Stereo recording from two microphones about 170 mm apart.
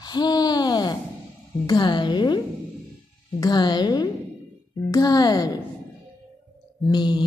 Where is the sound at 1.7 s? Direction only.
25° left (ahead or behind).